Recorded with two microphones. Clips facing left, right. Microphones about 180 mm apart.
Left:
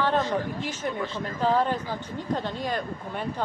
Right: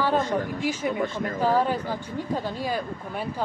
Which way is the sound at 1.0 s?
50° right (ahead or behind).